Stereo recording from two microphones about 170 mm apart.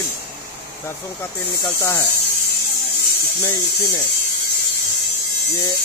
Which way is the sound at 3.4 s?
25° left (ahead or behind).